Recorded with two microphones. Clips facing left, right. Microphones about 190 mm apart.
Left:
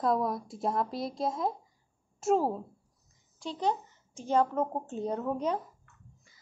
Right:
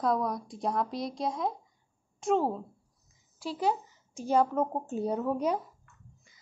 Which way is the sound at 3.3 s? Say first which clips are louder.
Right 1 dB; 5° right (ahead or behind).